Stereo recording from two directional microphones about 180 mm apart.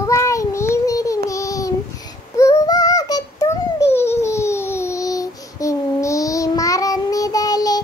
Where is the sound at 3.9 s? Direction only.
15° left (ahead or behind).